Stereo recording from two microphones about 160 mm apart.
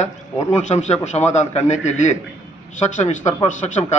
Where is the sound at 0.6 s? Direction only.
45° left (ahead or behind).